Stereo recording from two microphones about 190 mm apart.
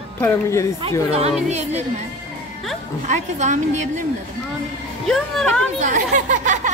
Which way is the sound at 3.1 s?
40° right (ahead or behind).